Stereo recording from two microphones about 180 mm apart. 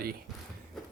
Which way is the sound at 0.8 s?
Centre (ahead or behind).